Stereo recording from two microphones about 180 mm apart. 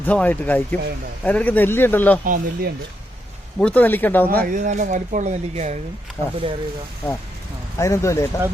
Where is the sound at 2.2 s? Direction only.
55° right (ahead or behind).